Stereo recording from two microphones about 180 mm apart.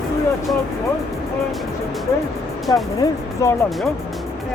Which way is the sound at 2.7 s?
25° left (ahead or behind).